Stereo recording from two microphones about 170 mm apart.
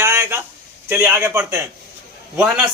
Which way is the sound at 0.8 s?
10° right (ahead or behind).